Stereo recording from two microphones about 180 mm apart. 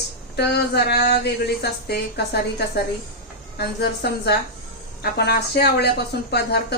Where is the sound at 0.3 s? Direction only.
65° left (ahead or behind).